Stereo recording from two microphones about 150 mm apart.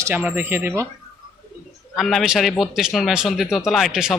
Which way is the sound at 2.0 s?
Centre (ahead or behind).